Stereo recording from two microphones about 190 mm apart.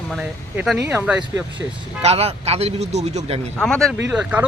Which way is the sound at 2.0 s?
35° right (ahead or behind).